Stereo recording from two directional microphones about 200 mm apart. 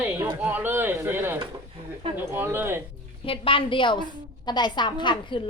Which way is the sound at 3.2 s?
25° left (ahead or behind).